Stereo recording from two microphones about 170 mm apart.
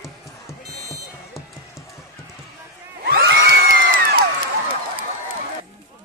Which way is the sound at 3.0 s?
65° right (ahead or behind).